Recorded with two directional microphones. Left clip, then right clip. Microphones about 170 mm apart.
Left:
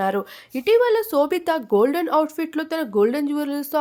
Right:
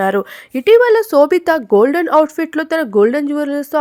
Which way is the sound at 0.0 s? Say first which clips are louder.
Right 7 dB; 35° right (ahead or behind).